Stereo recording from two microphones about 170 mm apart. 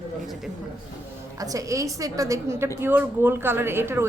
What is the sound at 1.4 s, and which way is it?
A woman's voice, 20° right (ahead or behind).